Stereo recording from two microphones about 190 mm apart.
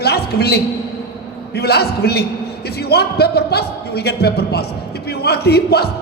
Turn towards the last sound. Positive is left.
turn(degrees=60)  # may be behind; listen again after turning